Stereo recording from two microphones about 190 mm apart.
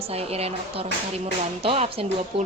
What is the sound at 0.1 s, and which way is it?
A woman's voice, 30° right (ahead or behind).